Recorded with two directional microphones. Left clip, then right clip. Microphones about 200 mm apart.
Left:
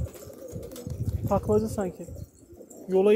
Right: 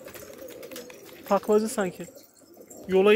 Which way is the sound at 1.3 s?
5° right (ahead or behind).